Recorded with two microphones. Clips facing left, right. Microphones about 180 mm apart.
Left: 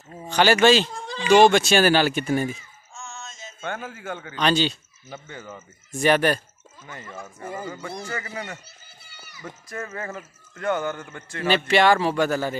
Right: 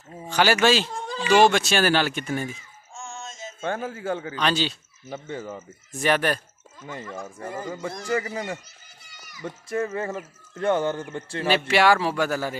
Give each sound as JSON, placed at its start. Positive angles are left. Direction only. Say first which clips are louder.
{"t": 0.2, "sound": "speech", "louder": "left 3 dB", "side_deg": -5}
{"t": 3.1, "sound": "music", "louder": "right 4 dB", "side_deg": -50}
{"t": 3.6, "sound": "a man's voice", "louder": "right 4 dB", "side_deg": -35}
{"t": 4.4, "sound": "speech", "louder": "left 5 dB", "side_deg": 0}
{"t": 5.1, "sound": "a man's voice", "louder": "right 5 dB", "side_deg": -30}
{"t": 5.9, "sound": "speech", "louder": "left 3 dB", "side_deg": 0}
{"t": 7.4, "sound": "speech", "louder": "left 1 dB", "side_deg": 5}
{"t": 8.1, "sound": "a man's voice", "louder": "right 6 dB", "side_deg": -30}
{"t": 9.1, "sound": "run", "louder": "even", "side_deg": 30}
{"t": 9.4, "sound": "speech", "louder": "right 7 dB", "side_deg": -25}
{"t": 11.4, "sound": "speech", "louder": "left 1 dB", "side_deg": -5}